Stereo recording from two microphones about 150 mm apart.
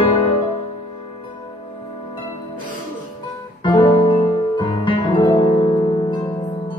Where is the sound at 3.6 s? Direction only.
30° left (ahead or behind).